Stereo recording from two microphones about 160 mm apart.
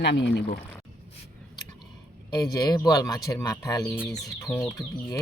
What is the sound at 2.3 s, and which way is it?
Speech, 25° left (ahead or behind).